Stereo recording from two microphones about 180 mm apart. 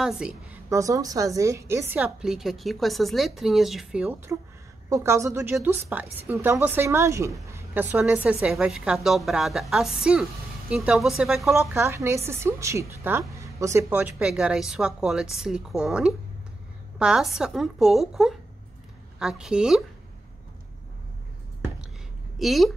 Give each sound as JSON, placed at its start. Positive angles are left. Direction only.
{"t": 0.0, "sound": "a woman's voice", "side_deg": -5}
{"t": 0.7, "sound": "a woman's voice", "side_deg": -20}
{"t": 4.8, "sound": "a woman's voice", "side_deg": -15}
{"t": 11.5, "sound": "a woman's voice", "side_deg": -15}
{"t": 22.4, "sound": "a woman's voice", "side_deg": 0}